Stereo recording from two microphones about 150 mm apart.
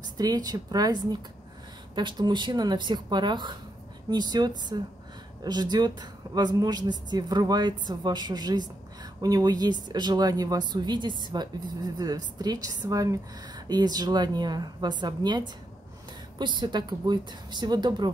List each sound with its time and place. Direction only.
0.2 s speech: 25° right (ahead or behind)
2.0 s speech: 30° right (ahead or behind)